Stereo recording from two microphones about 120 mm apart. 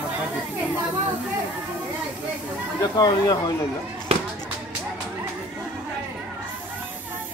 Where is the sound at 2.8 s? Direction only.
30° left (ahead or behind).